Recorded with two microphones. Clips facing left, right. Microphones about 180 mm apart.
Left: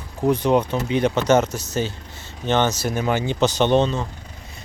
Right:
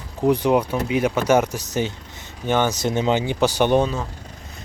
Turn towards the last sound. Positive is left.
turn(degrees=-10)  # may be behind; listen again after turning